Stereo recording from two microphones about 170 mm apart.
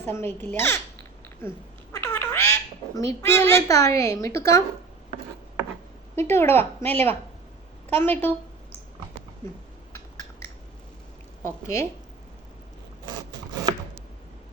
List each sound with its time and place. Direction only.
0.0 s speech: 15° left (ahead or behind)
1.9 s speech: 15° left (ahead or behind)
6.1 s speech: 15° left (ahead or behind)
11.4 s speech: 15° left (ahead or behind)